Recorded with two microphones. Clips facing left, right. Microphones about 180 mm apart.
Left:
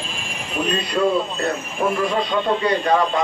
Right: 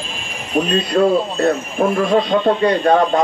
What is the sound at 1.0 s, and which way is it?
Speech, 45° right (ahead or behind).